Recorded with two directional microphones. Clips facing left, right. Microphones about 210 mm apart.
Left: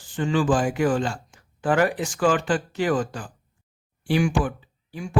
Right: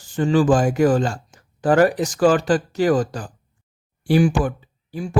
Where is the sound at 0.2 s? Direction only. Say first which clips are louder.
Right 5 dB; 40° right (ahead or behind).